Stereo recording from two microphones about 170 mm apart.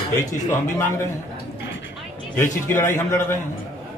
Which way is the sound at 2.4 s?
15° left (ahead or behind).